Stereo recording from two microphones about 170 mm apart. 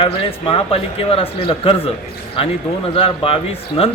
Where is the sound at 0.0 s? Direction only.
30° left (ahead or behind).